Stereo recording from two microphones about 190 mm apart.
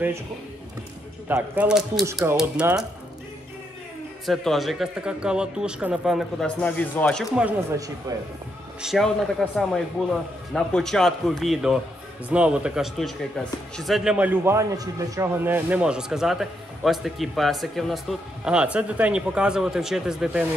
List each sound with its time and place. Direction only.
1.3 s a man's voice: 5° right (ahead or behind)
2.0 s a man's voice: 15° right (ahead or behind)
4.3 s a man's voice: centre (ahead or behind)
8.1 s speech: 20° right (ahead or behind)
8.8 s a man's voice: centre (ahead or behind)